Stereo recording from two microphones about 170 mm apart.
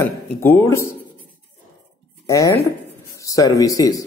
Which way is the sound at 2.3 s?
20° left (ahead or behind).